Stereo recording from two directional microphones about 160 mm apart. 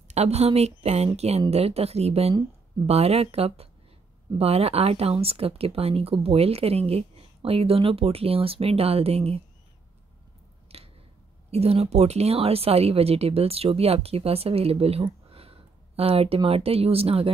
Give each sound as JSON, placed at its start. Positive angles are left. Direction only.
{"t": 0.1, "sound": "speech", "side_deg": -40}
{"t": 10.7, "sound": "a sound", "side_deg": -40}
{"t": 11.5, "sound": "speech", "side_deg": -40}